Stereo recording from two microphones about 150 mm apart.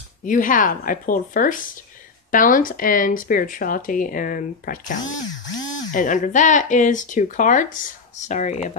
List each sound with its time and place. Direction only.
0.2 s speech: 60° left (ahead or behind)